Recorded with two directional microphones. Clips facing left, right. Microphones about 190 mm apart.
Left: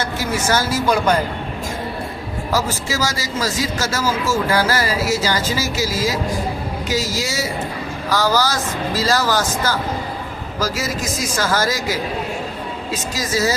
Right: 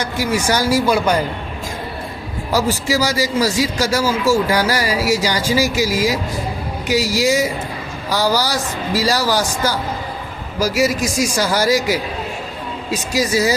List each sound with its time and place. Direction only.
0.0 s speech: 15° right (ahead or behind)
2.8 s speech: 15° right (ahead or behind)